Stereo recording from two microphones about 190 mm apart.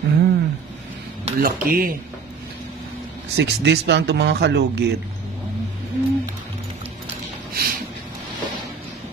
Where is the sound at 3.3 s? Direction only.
60° right (ahead or behind).